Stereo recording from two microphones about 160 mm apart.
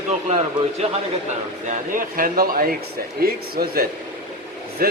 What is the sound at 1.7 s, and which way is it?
Speech, 60° right (ahead or behind).